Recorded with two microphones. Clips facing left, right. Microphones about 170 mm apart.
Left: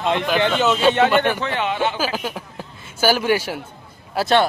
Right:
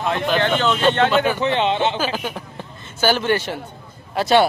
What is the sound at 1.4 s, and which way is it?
Speech, 25° right (ahead or behind).